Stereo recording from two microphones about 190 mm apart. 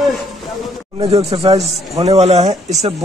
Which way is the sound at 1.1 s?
30° right (ahead or behind).